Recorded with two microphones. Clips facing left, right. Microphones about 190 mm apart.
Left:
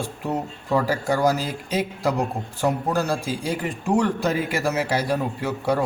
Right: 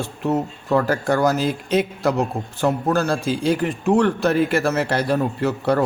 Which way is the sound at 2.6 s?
10° left (ahead or behind).